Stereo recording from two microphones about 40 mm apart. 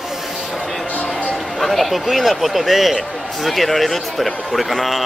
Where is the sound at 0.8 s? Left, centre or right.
Left.